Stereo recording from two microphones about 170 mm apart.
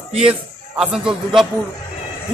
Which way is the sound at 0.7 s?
5° right (ahead or behind).